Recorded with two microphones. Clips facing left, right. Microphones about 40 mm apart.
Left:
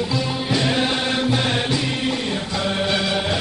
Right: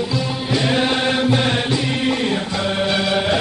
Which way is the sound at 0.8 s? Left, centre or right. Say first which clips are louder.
Right 3 dB; right.